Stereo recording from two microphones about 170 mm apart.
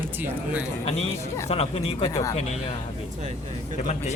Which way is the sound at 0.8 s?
40° left (ahead or behind).